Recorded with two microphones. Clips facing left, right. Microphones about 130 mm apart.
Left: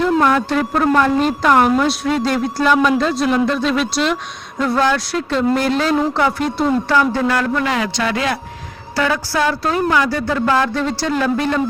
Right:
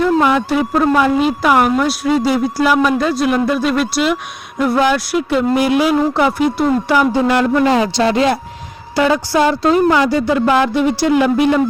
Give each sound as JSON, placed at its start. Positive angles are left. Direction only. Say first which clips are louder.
{"t": 0.0, "sound": "speech", "louder": "right 2 dB", "side_deg": -5}